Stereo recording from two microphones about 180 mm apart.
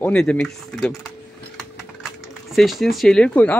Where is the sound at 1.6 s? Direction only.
Centre (ahead or behind).